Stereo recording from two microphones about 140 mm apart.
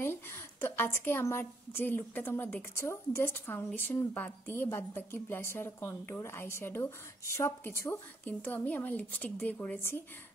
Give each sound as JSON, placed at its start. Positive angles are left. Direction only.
{"t": 0.0, "sound": "a woman's voice", "side_deg": 15}